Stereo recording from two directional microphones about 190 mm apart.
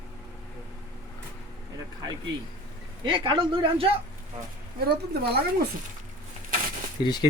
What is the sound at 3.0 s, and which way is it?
Speech, 25° right (ahead or behind).